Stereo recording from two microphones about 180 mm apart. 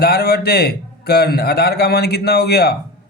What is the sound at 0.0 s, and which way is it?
A man's voice, 60° left (ahead or behind).